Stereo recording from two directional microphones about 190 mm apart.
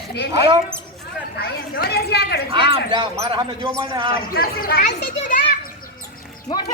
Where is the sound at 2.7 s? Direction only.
25° right (ahead or behind).